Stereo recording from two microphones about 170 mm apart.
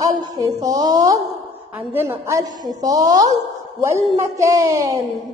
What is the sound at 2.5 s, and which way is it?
Speech, 50° right (ahead or behind).